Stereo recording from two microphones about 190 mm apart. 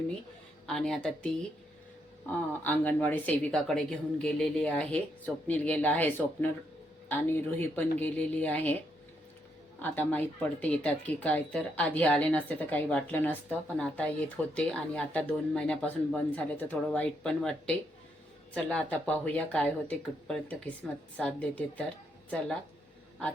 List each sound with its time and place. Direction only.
0.7 s speech: centre (ahead or behind)
2.5 s speech: 10° left (ahead or behind)
9.8 s speech: 10° left (ahead or behind)